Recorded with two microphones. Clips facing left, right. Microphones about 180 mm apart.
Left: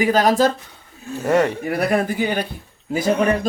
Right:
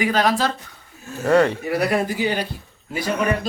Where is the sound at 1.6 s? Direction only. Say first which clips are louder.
Left 1 dB; 50° left (ahead or behind).